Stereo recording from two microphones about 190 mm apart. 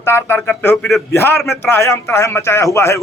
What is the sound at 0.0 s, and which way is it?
Speech, 10° left (ahead or behind).